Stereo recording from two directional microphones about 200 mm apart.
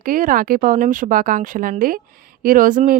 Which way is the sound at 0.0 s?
45° right (ahead or behind).